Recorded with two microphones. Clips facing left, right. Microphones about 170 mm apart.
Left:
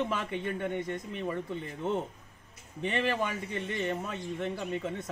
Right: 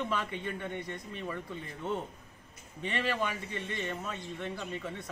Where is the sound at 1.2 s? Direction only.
20° left (ahead or behind).